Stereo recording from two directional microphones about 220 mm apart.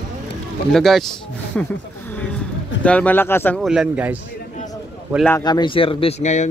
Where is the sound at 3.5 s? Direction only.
5° right (ahead or behind).